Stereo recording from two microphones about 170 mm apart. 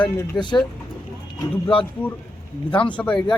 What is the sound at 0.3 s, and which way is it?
Speech, 25° left (ahead or behind).